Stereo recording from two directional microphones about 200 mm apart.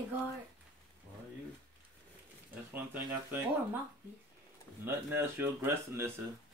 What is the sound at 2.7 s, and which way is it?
Speech, 10° right (ahead or behind).